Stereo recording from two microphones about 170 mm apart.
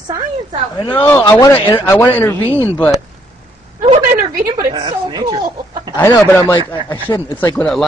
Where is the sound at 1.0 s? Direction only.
15° left (ahead or behind).